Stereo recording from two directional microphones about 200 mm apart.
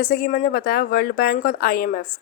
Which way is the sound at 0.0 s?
45° left (ahead or behind).